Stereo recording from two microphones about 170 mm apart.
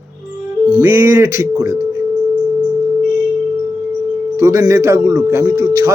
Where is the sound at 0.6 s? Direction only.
20° right (ahead or behind).